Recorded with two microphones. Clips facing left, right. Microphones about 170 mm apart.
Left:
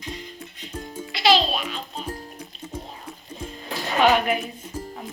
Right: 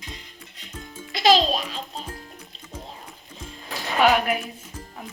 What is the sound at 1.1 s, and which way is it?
Speech, 45° right (ahead or behind).